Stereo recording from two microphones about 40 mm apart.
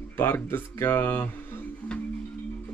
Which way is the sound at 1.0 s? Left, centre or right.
Left.